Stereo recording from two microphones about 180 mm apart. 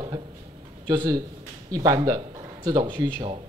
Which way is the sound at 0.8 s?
20° right (ahead or behind).